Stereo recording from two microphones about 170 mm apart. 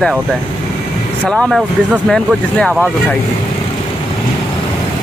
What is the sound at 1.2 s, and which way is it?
Speech, centre (ahead or behind).